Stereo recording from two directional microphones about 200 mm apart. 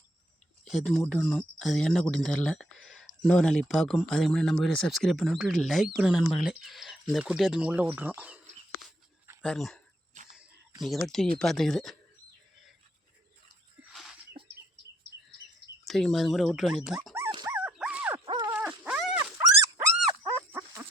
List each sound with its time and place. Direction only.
0.6 s speech: centre (ahead or behind)
9.4 s speech: 5° left (ahead or behind)
10.3 s a sound: centre (ahead or behind)
11.0 s speech: centre (ahead or behind)
13.9 s a sound: centre (ahead or behind)
15.9 s speech: centre (ahead or behind)
17.2 s dog: 15° right (ahead or behind)
17.6 s dog: 5° right (ahead or behind)
19.4 s dog: 15° right (ahead or behind)